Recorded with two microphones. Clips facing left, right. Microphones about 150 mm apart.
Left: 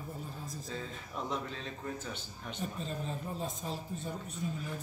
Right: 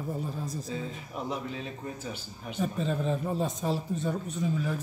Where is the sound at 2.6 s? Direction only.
70° right (ahead or behind).